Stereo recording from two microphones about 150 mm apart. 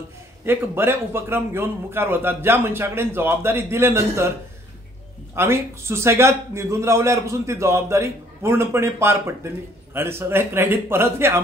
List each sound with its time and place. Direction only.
0.5 s a man's voice: 15° right (ahead or behind)
5.3 s a man's voice: 15° right (ahead or behind)